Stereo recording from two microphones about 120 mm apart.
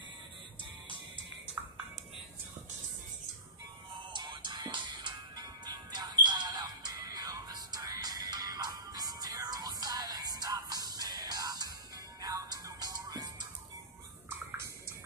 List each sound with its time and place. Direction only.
4.1 s music: 40° right (ahead or behind)